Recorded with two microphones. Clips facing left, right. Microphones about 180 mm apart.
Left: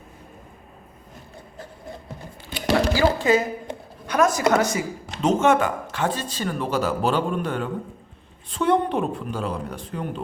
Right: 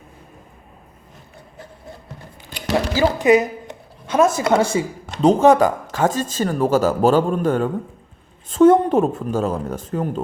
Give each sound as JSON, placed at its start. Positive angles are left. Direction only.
{"t": 2.9, "sound": "speech", "side_deg": -20}